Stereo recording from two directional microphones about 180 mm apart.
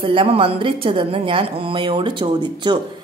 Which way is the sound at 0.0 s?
30° right (ahead or behind).